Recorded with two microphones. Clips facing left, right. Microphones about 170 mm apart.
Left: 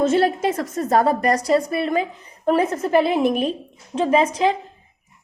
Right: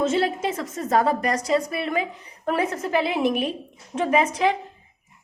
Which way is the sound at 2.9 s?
45° left (ahead or behind).